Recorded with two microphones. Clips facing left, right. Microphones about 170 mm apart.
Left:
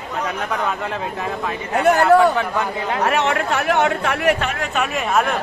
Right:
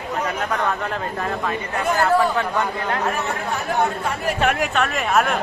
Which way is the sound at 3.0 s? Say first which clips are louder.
Left 5 dB; 85° left.